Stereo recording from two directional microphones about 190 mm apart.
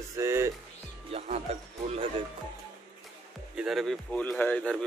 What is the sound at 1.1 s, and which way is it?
Speech, 35° right (ahead or behind).